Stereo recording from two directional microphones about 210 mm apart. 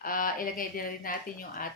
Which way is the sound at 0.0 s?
40° left (ahead or behind).